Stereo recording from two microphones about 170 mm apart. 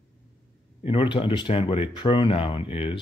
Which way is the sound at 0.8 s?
30° left (ahead or behind).